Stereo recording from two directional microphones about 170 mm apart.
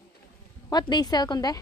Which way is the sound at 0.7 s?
25° left (ahead or behind).